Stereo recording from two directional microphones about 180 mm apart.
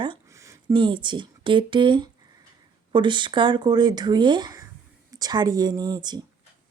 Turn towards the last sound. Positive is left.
turn(degrees=-25)  # may be behind; listen again after turning